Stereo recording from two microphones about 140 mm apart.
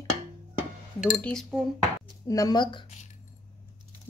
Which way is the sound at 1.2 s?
Centre (ahead or behind).